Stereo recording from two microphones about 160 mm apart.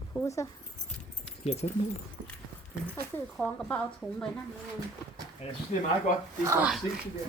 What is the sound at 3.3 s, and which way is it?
Speech, 5° left (ahead or behind).